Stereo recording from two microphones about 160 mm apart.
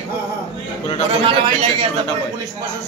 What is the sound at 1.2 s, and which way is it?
Speech, 35° right (ahead or behind).